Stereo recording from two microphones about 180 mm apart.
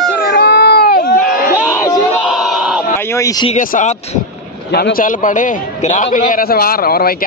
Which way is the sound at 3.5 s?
45° left (ahead or behind).